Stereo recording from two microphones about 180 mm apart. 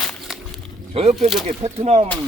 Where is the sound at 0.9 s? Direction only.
35° right (ahead or behind).